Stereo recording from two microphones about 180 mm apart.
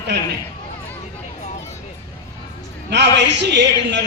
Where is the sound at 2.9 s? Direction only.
75° right (ahead or behind).